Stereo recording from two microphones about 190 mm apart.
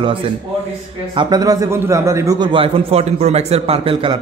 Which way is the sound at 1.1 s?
20° right (ahead or behind).